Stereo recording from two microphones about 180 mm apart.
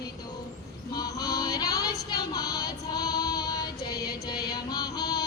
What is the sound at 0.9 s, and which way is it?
Music, 20° left (ahead or behind).